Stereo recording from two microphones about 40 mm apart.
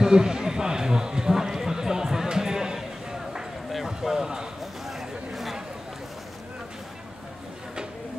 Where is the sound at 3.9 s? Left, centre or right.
Centre.